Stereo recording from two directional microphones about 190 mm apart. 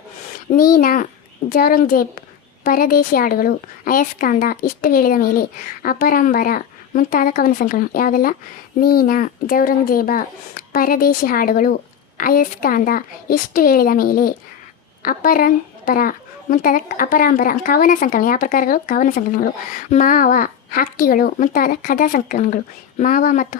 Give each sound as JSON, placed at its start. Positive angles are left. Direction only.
{"t": 0.5, "sound": "a woman's voice", "side_deg": 50}